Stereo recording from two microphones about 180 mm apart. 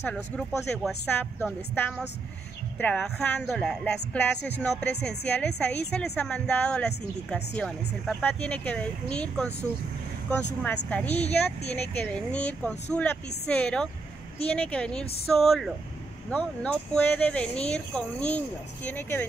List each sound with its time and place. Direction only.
0.0 s speech: centre (ahead or behind)
10.6 s speech: 10° left (ahead or behind)
11.1 s speech: 35° left (ahead or behind)
11.7 s speech: 10° left (ahead or behind)